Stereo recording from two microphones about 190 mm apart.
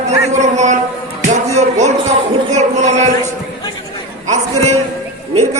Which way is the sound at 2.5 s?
35° right (ahead or behind).